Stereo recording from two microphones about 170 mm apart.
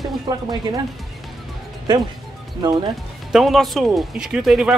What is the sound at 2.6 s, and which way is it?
Speech, 25° right (ahead or behind).